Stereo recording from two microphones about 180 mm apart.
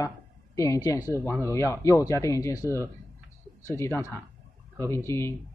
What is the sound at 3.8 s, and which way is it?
Speech, 15° left (ahead or behind).